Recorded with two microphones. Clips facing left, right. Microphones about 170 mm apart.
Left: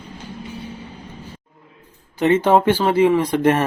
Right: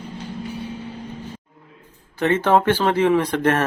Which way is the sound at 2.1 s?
15° left (ahead or behind).